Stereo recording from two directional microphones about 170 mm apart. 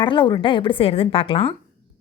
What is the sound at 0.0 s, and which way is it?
A woman's voice, 25° left (ahead or behind).